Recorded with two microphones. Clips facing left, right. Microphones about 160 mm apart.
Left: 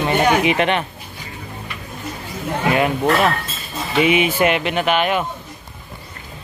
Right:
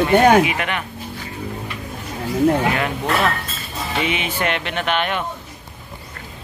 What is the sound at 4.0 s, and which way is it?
Speech, 10° left (ahead or behind).